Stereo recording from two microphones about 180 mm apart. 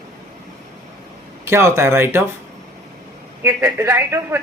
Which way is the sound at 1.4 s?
15° right (ahead or behind).